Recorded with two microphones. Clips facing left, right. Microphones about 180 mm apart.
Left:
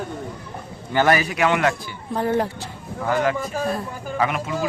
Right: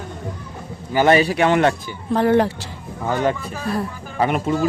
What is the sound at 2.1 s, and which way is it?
Speech, 90° right.